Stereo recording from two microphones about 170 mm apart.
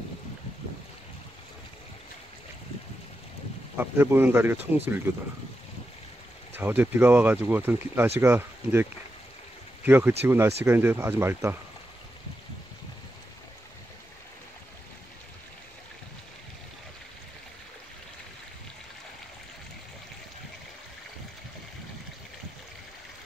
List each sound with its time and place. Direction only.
3.7 s speech: 10° right (ahead or behind)
6.5 s speech: 10° right (ahead or behind)
9.8 s speech: 10° right (ahead or behind)